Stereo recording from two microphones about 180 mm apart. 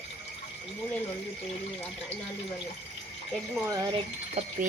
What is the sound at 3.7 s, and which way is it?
Speech, 20° right (ahead or behind).